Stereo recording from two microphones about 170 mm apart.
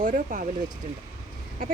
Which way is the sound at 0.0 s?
50° right (ahead or behind).